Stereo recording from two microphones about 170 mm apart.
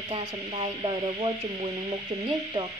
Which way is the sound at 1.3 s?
25° right (ahead or behind).